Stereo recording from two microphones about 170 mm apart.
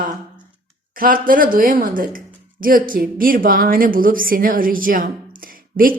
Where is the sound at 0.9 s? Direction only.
55° right (ahead or behind).